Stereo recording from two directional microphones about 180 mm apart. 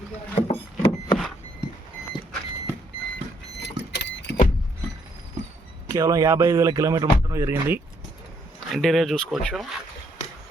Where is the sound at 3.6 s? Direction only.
70° left (ahead or behind).